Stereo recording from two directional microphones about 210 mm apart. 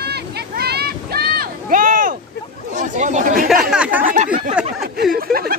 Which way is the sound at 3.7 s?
5° right (ahead or behind).